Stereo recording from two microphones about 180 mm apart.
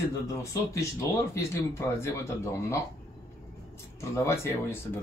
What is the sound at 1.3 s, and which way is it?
Speech, 15° left (ahead or behind).